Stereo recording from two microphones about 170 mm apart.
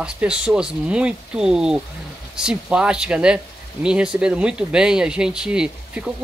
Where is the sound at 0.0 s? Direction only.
5° right (ahead or behind).